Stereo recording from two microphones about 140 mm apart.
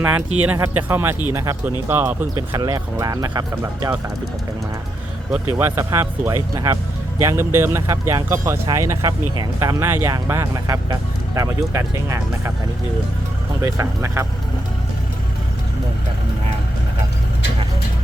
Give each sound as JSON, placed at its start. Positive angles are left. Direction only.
{"t": 0.0, "sound": "speech", "side_deg": -10}
{"t": 2.5, "sound": "speech", "side_deg": -30}
{"t": 5.5, "sound": "speech", "side_deg": -20}
{"t": 13.6, "sound": "speech", "side_deg": -20}